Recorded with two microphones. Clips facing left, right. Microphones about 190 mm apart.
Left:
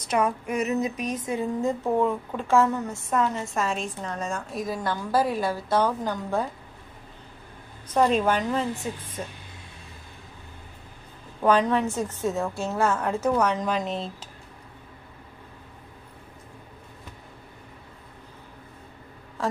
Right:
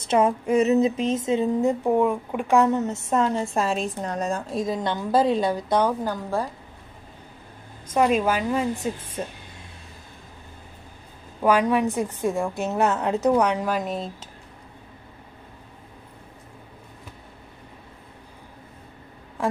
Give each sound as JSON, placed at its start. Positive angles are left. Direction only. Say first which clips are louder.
{"t": 0.0, "sound": "a woman's voice", "louder": "right 4 dB", "side_deg": -25}
{"t": 7.9, "sound": "a woman's voice", "louder": "right 1 dB", "side_deg": -10}
{"t": 11.4, "sound": "a woman's voice", "louder": "right 1 dB", "side_deg": -10}